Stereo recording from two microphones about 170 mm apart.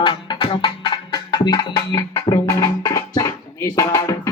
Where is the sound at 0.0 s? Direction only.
30° left (ahead or behind).